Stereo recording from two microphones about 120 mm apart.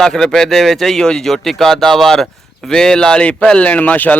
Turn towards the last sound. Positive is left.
turn(degrees=15)  # may be behind; listen again after turning